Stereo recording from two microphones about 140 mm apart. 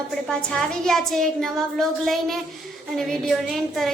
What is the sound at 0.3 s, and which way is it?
A woman's voice, 5° left (ahead or behind).